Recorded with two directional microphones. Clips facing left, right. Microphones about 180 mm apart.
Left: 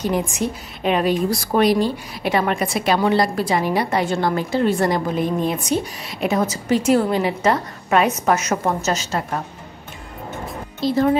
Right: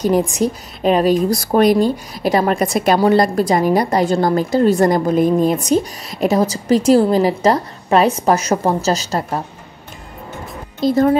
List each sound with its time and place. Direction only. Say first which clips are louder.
0.0 s a woman's voice: right 6 dB; 40° right (ahead or behind)
10.9 s speech: right 4 dB; 45° right (ahead or behind)